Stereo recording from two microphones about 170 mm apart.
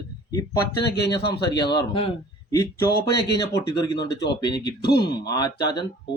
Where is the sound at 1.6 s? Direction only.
30° left (ahead or behind).